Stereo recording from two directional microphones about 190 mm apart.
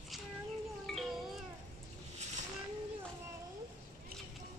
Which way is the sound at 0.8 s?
Centre (ahead or behind).